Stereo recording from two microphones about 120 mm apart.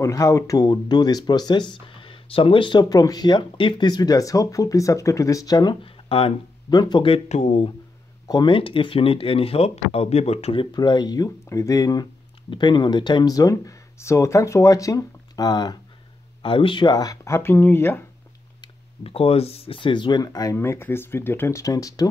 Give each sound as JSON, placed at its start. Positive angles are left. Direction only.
{"t": 0.0, "sound": "speech", "side_deg": 25}
{"t": 5.9, "sound": "a sound", "side_deg": 50}
{"t": 6.7, "sound": "speech", "side_deg": 35}
{"t": 7.1, "sound": "speech", "side_deg": 70}
{"t": 8.3, "sound": "speech", "side_deg": 40}
{"t": 16.4, "sound": "speech", "side_deg": 45}
{"t": 19.0, "sound": "speech", "side_deg": 55}
{"t": 20.5, "sound": "speech", "side_deg": 20}